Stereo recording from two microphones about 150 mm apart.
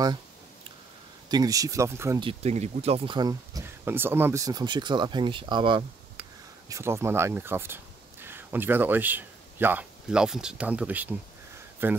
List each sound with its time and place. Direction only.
1.3 s speech: 25° right (ahead or behind)
2.1 s speech: 40° right (ahead or behind)
3.2 s speech: 25° right (ahead or behind)
6.7 s speech: 15° right (ahead or behind)